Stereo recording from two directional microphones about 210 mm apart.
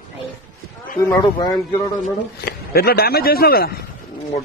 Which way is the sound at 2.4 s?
45° left (ahead or behind).